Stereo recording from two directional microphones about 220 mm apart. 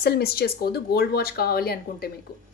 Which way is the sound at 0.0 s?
45° left (ahead or behind).